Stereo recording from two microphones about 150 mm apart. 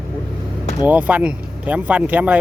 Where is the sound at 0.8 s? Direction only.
10° right (ahead or behind).